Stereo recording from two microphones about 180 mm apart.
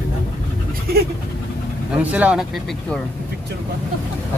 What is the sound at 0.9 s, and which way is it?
Speech, 55° right (ahead or behind).